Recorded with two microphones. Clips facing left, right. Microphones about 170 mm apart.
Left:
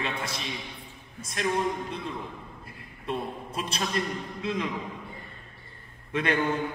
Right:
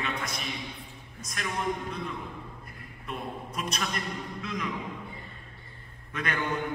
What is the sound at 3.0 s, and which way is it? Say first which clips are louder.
A man's voice: left 4 dB; 30° left (ahead or behind).